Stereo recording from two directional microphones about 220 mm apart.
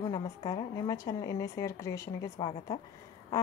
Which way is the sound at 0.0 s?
20° left (ahead or behind).